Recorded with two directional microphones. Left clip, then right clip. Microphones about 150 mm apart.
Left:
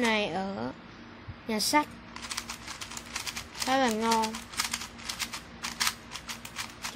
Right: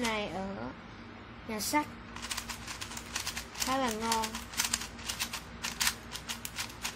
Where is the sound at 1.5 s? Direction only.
55° left (ahead or behind).